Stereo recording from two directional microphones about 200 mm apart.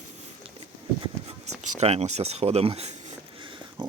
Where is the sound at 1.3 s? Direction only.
35° right (ahead or behind).